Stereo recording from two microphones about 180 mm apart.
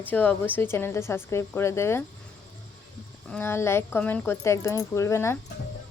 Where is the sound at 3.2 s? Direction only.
10° left (ahead or behind).